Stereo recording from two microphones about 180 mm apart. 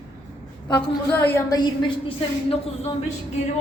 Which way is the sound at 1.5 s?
25° left (ahead or behind).